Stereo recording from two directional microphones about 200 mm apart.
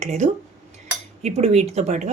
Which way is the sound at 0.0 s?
35° right (ahead or behind).